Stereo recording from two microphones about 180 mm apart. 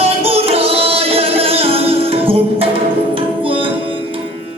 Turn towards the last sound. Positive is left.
turn(degrees=-30)  # may be behind; listen again after turning